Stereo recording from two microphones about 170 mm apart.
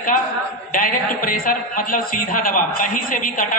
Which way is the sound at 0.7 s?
55° left (ahead or behind).